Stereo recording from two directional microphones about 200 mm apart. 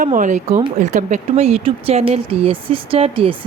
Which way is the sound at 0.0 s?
40° right (ahead or behind).